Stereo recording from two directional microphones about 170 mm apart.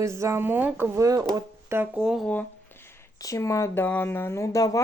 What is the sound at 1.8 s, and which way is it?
Speech, 10° right (ahead or behind).